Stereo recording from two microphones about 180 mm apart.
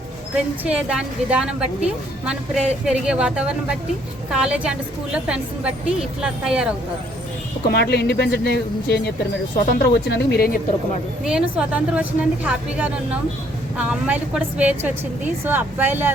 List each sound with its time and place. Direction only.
0.3 s a woman's voice: 5° right (ahead or behind)
7.7 s speech: 65° left (ahead or behind)
11.2 s a woman's voice: 5° right (ahead or behind)